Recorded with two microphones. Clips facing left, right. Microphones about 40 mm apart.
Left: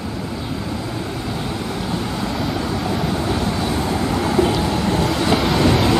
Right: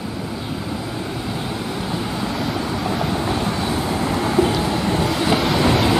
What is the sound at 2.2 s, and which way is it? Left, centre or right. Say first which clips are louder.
Vehicle: left 1 dB; centre.